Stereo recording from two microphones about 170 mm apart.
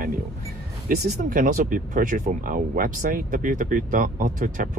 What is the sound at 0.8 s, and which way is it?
Speech, 50° right (ahead or behind).